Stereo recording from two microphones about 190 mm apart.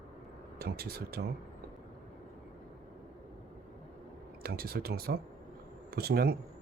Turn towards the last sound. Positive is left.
turn(degrees=-55)  # may be behind; listen again after turning